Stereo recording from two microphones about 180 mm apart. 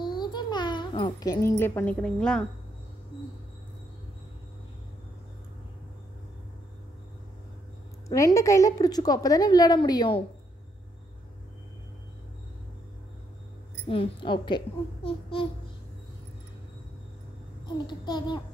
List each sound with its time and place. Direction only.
0.0 s babbling: 25° left (ahead or behind)
1.6 s a woman's voice: 15° left (ahead or behind)
8.1 s a woman's voice: 15° left (ahead or behind)
13.8 s a woman's voice: 30° left (ahead or behind)
17.6 s a woman's voice: 25° left (ahead or behind)